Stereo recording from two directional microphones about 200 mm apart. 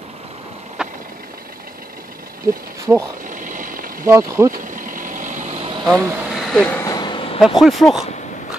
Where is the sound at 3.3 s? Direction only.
40° right (ahead or behind).